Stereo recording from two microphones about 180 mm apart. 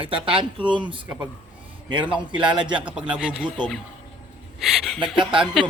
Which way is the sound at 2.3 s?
25° right (ahead or behind).